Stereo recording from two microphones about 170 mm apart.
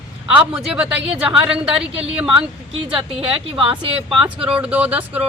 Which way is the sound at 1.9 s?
35° right (ahead or behind).